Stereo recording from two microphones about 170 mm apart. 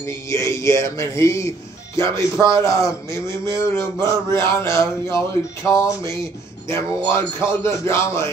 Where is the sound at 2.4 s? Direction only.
25° right (ahead or behind).